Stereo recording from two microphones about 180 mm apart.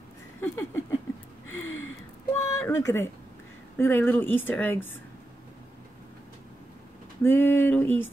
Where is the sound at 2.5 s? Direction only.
15° left (ahead or behind).